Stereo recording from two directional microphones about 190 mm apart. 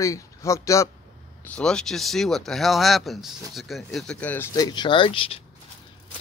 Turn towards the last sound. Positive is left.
turn(degrees=30)  # may be behind; listen again after turning